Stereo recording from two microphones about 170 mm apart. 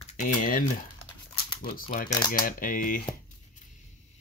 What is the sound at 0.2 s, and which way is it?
Speech, 50° left (ahead or behind).